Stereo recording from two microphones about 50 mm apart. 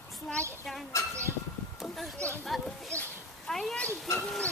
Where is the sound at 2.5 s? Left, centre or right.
Centre.